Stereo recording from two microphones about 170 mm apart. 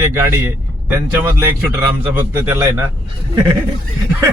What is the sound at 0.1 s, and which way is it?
A man's voice, 15° right (ahead or behind).